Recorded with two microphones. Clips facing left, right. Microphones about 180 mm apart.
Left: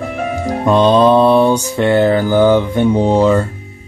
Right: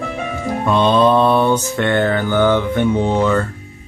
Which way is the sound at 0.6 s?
35° left (ahead or behind).